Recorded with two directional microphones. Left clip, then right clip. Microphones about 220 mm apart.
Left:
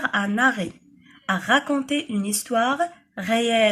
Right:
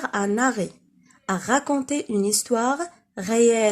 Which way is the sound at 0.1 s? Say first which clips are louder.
Left 2 dB; 50° right (ahead or behind).